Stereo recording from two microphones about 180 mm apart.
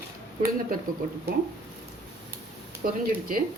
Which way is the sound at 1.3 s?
55° right (ahead or behind).